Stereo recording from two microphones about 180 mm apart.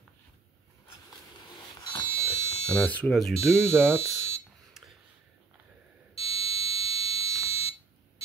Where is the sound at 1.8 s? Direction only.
25° left (ahead or behind).